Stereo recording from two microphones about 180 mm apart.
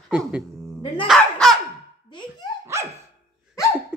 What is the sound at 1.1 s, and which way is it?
Dog, centre (ahead or behind).